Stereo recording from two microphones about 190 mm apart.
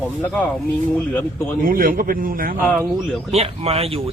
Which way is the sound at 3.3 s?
30° right (ahead or behind).